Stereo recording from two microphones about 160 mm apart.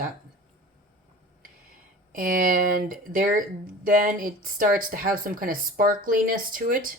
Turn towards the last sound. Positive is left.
turn(degrees=-60)  # may be behind; listen again after turning